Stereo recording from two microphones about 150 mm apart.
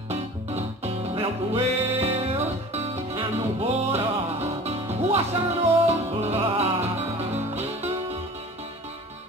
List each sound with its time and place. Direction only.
0.1 s music: 45° right (ahead or behind)